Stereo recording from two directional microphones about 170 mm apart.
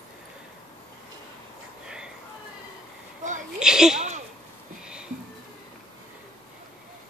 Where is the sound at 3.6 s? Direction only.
5° right (ahead or behind).